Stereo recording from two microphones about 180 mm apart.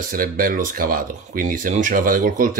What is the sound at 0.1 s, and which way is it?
Speech, 50° right (ahead or behind).